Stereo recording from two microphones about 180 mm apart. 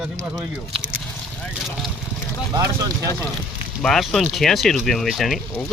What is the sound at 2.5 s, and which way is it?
Speech, 20° right (ahead or behind).